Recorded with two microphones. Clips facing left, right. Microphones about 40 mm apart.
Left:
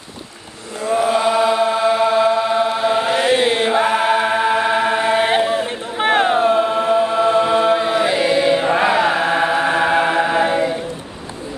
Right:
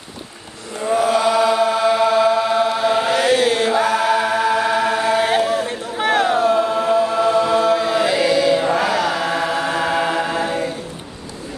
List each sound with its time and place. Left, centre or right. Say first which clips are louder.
0.9 s chant: even; left
3.2 s chant: even; left